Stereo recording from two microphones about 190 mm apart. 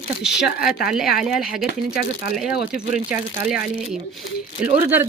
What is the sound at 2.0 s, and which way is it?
Speech, 55° left (ahead or behind).